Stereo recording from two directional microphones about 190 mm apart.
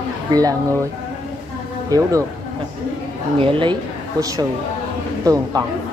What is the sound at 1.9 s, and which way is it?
Speech, 20° right (ahead or behind).